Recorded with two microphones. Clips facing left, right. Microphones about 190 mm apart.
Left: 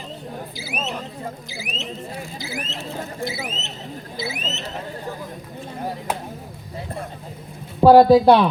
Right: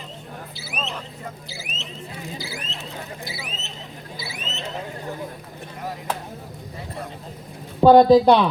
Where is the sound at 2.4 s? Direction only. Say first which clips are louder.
Left 3 dB; 20° left (ahead or behind).